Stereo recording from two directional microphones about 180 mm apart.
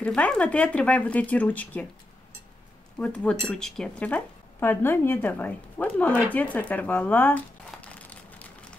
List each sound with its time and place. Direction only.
0.0 s speech: 5° left (ahead or behind)
3.0 s speech: 5° left (ahead or behind)
6.3 s crumpling: 10° left (ahead or behind)